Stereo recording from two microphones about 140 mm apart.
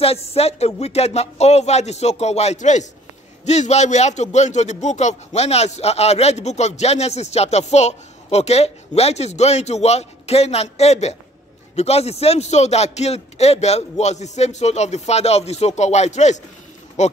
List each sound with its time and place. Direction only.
0.0 s a man's voice: 45° left (ahead or behind)